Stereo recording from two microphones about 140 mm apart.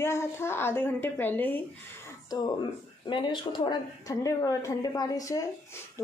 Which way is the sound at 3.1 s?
35° left (ahead or behind).